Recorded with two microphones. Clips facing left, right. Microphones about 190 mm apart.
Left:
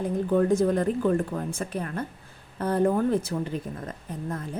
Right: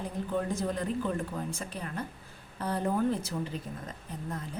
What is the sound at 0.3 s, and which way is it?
A woman's voice, 55° left (ahead or behind).